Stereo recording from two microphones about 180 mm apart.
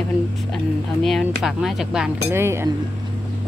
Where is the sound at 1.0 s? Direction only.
Centre (ahead or behind).